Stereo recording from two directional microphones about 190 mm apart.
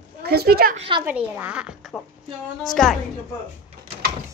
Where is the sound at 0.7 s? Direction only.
25° right (ahead or behind).